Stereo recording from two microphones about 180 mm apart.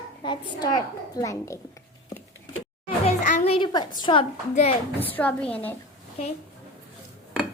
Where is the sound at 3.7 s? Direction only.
20° left (ahead or behind).